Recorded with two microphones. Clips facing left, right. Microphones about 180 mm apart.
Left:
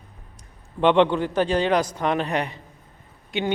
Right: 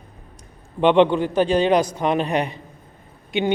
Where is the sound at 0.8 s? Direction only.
15° right (ahead or behind).